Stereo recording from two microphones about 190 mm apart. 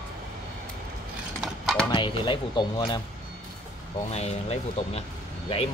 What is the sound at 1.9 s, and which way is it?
Speech, 25° left (ahead or behind).